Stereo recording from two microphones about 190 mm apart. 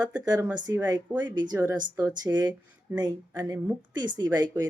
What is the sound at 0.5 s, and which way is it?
A woman's voice, 20° right (ahead or behind).